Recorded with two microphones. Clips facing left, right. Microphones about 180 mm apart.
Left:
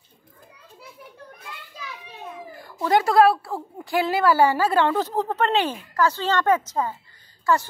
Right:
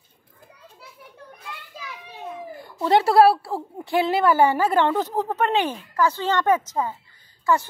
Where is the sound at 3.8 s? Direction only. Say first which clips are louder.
Right 1 dB; 20° right (ahead or behind).